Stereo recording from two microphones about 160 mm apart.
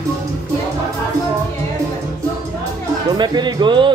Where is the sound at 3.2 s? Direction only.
25° right (ahead or behind).